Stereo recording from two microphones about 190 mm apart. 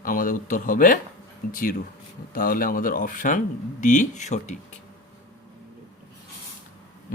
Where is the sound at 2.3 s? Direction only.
50° left (ahead or behind).